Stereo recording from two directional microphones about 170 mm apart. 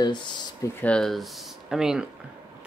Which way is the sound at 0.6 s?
10° left (ahead or behind).